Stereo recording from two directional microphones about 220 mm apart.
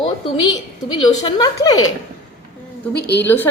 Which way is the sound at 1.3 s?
15° left (ahead or behind).